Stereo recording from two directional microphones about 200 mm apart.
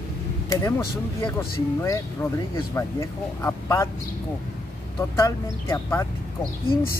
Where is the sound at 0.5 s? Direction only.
20° left (ahead or behind).